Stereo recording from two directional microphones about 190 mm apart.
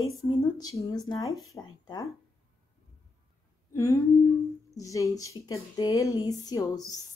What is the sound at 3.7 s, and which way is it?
Speech, 15° left (ahead or behind).